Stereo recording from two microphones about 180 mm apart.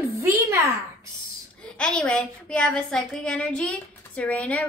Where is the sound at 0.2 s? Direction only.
15° right (ahead or behind).